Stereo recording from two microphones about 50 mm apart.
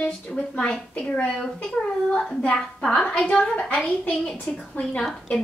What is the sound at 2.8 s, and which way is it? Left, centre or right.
A woman's voice, centre.